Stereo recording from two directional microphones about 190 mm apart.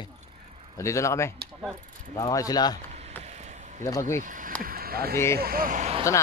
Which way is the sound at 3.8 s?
15° left (ahead or behind).